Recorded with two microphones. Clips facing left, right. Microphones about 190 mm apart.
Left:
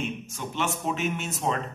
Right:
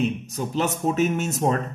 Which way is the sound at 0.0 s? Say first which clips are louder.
Right 8 dB; 35° right (ahead or behind).